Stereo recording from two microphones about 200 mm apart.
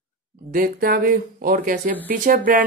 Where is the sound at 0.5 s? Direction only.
45° right (ahead or behind).